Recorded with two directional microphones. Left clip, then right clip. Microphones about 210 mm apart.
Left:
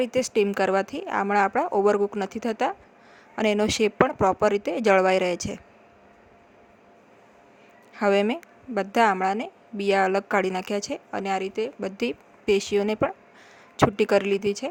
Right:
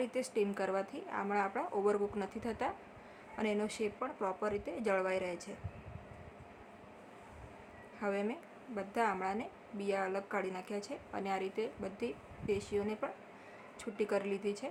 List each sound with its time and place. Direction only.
0.0 s a woman's voice: 40° left (ahead or behind)
7.9 s a woman's voice: 45° left (ahead or behind)